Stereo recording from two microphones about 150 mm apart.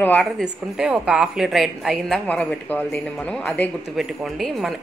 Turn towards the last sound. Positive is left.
turn(degrees=0)  # may be behind; listen again after turning